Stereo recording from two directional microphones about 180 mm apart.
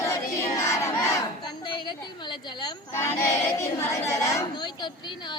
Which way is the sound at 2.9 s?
15° left (ahead or behind).